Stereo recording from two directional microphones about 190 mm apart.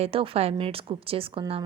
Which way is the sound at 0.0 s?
30° right (ahead or behind).